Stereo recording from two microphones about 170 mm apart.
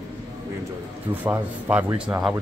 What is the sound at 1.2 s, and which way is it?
Speech, 10° right (ahead or behind).